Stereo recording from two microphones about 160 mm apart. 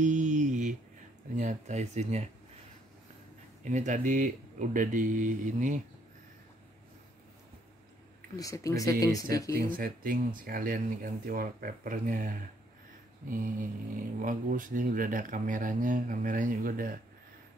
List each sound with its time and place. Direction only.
0.0 s a sound: 50° right (ahead or behind)
1.3 s speech: 50° right (ahead or behind)
3.6 s speech: 50° right (ahead or behind)
8.4 s speech: 20° left (ahead or behind)
9.6 s speech: 65° right (ahead or behind)